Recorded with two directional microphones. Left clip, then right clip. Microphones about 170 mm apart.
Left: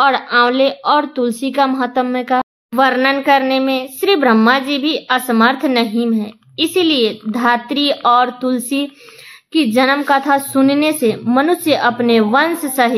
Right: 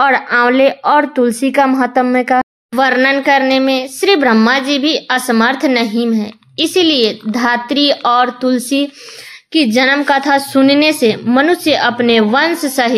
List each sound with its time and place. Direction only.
0.0 s a woman's voice: 35° right (ahead or behind)